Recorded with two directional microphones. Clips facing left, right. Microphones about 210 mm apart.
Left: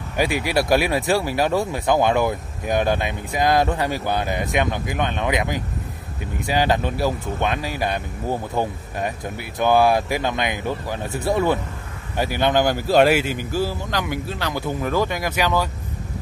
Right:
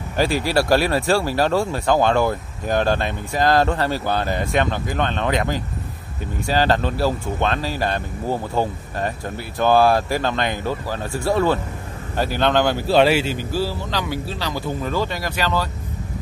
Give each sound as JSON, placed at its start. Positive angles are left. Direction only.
{"t": 0.2, "sound": "speech", "side_deg": 15}